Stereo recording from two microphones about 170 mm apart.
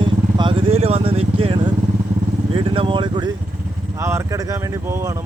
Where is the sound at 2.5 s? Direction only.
30° right (ahead or behind).